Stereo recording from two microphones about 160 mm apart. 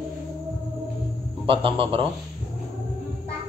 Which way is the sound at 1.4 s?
35° right (ahead or behind).